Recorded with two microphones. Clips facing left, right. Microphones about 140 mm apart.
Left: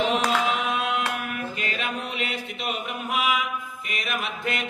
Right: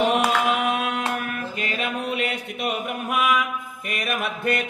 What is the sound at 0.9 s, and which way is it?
Mantra, 45° right (ahead or behind).